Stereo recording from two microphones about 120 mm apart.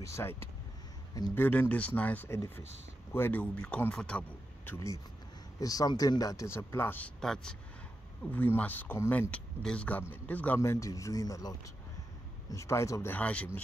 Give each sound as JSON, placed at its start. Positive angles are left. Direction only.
{"t": 0.0, "sound": "speech", "side_deg": 20}
{"t": 4.7, "sound": "speech", "side_deg": 25}
{"t": 7.2, "sound": "speech", "side_deg": 5}